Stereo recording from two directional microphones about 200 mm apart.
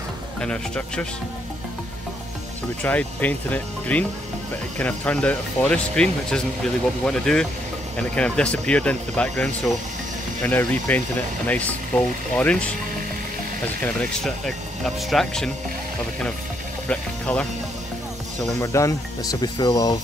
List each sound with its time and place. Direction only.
0.4 s speech: 5° left (ahead or behind)
2.8 s speech: 10° left (ahead or behind)
13.8 s speech: centre (ahead or behind)
16.8 s speech: 5° left (ahead or behind)
18.6 s speech: 15° left (ahead or behind)